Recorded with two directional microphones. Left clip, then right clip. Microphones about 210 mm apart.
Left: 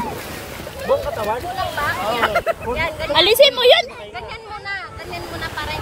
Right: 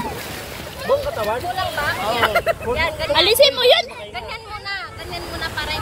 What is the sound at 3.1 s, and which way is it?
Speech, 10° left (ahead or behind).